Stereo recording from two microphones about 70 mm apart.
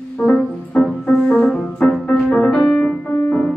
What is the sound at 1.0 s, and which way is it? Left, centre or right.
Piano, centre.